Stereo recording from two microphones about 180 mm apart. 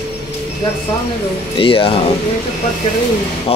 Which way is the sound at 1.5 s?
30° left (ahead or behind).